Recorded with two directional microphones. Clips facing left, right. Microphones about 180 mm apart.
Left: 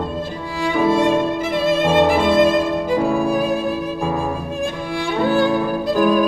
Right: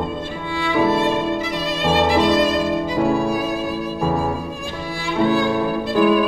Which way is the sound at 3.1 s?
55° left (ahead or behind).